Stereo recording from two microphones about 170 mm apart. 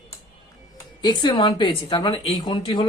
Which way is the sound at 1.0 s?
25° left (ahead or behind).